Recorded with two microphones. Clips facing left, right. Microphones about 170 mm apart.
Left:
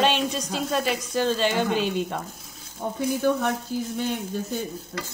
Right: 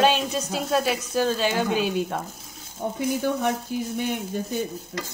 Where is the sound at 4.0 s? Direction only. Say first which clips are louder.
Even; 15° right (ahead or behind).